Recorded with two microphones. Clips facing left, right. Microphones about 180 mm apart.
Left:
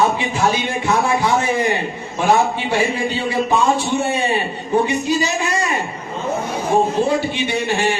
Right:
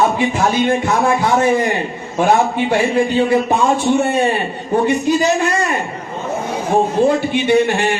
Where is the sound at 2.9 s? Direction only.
50° right (ahead or behind).